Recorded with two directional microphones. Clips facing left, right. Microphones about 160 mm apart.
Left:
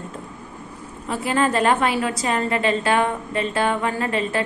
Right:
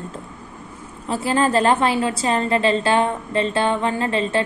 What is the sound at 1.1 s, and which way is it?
A woman's voice, 30° right (ahead or behind).